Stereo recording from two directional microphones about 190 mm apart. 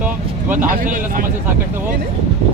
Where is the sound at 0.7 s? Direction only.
45° right (ahead or behind).